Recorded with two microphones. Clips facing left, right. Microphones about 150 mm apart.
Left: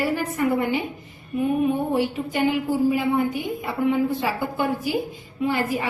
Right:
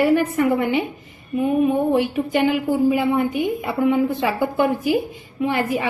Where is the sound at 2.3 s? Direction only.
65° right (ahead or behind).